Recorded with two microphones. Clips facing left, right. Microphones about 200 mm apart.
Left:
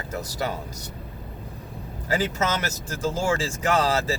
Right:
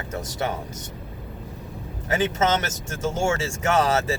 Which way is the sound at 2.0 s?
25° right (ahead or behind).